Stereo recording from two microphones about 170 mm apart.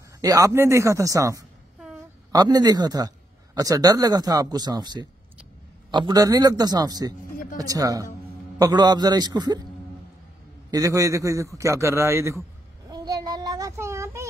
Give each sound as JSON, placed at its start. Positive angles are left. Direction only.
{"t": 0.2, "sound": "speech", "side_deg": -20}
{"t": 10.7, "sound": "a man's voice", "side_deg": -20}
{"t": 12.9, "sound": "child singing", "side_deg": -25}